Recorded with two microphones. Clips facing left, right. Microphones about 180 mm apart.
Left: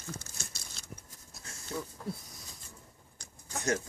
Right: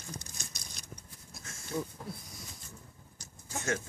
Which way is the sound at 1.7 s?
20° right (ahead or behind).